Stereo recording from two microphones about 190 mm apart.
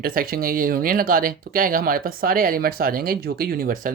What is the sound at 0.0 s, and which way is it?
Speech, 50° right (ahead or behind).